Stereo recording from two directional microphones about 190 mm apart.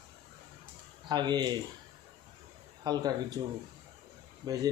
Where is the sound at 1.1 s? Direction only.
25° right (ahead or behind).